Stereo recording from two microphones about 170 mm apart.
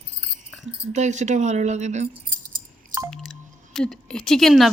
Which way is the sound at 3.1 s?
5° left (ahead or behind).